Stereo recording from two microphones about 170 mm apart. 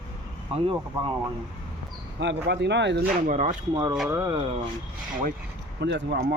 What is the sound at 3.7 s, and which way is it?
Speech, 25° right (ahead or behind).